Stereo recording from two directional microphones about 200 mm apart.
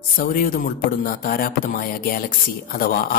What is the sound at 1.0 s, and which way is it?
Speech, 45° left (ahead or behind).